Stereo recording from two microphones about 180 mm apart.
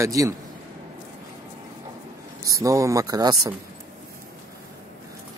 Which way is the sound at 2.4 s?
20° right (ahead or behind).